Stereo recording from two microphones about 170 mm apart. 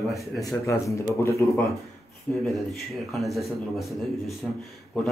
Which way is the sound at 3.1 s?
Centre (ahead or behind).